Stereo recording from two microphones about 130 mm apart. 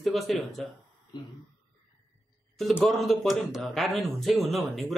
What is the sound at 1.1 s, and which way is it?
Speech, 35° left (ahead or behind).